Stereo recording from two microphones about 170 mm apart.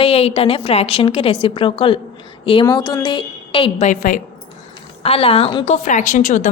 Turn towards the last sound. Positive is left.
turn(degrees=45)  # may be behind; listen again after turning